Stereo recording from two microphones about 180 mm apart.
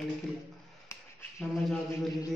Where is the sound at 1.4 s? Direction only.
Centre (ahead or behind).